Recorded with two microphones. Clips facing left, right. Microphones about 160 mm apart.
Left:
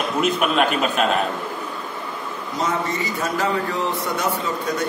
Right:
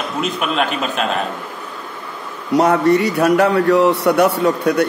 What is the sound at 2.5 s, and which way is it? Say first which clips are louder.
A man's voice: right 12 dB; 70° right (ahead or behind).